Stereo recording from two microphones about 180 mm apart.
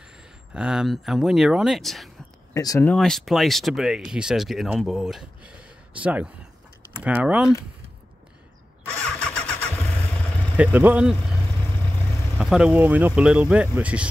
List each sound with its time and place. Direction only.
0.0 s speech: 5° right (ahead or behind)
2.5 s speech: 20° left (ahead or behind)
2.9 s speech: centre (ahead or behind)
8.8 s vehicle: 5° left (ahead or behind)
10.5 s speech: 10° right (ahead or behind)
12.4 s speech: 5° right (ahead or behind)